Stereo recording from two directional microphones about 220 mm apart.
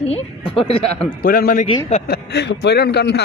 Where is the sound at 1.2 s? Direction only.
40° left (ahead or behind).